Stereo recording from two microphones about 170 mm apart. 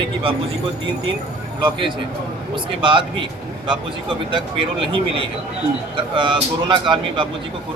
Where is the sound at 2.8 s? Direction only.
30° right (ahead or behind).